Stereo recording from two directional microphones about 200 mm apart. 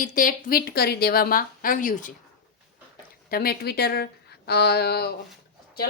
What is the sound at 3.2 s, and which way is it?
A woman's voice, 50° left (ahead or behind).